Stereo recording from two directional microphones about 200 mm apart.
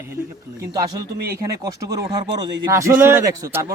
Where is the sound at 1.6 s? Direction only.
15° right (ahead or behind).